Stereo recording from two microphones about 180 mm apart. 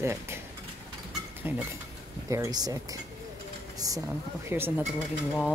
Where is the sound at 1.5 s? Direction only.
10° right (ahead or behind).